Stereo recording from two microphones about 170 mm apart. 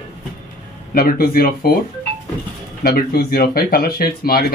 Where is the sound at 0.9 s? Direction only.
60° left (ahead or behind).